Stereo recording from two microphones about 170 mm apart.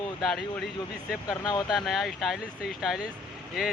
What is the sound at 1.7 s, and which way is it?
Speech, centre (ahead or behind).